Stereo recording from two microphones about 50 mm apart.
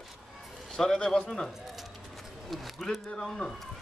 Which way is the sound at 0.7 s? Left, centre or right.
Centre.